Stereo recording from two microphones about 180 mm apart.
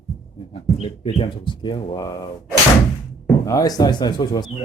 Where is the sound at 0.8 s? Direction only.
30° left (ahead or behind).